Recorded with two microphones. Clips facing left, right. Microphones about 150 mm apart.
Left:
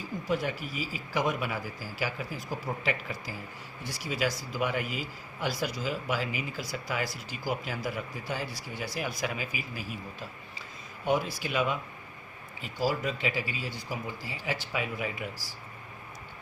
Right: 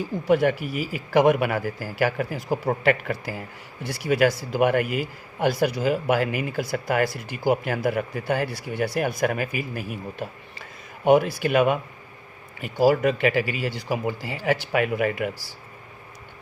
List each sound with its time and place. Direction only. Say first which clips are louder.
0.3 s speech: right 11 dB; 65° right (ahead or behind)